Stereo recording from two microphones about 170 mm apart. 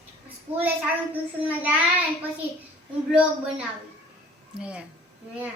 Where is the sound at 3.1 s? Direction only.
5° right (ahead or behind).